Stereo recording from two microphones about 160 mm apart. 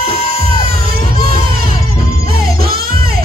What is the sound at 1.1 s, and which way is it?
Music, 65° right (ahead or behind).